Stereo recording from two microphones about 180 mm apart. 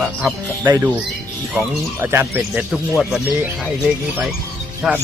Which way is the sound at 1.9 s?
10° right (ahead or behind).